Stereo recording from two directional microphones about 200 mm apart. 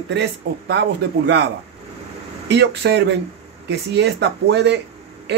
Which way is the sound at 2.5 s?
60° right (ahead or behind).